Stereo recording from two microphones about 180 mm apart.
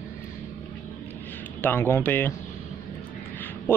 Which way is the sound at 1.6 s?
10° left (ahead or behind).